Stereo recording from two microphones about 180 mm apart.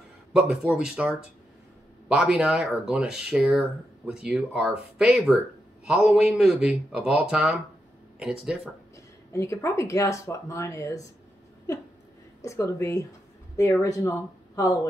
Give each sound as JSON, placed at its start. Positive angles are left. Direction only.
{"t": 0.3, "sound": "speech", "side_deg": -5}
{"t": 8.9, "sound": "speech", "side_deg": 15}
{"t": 12.4, "sound": "speech", "side_deg": 15}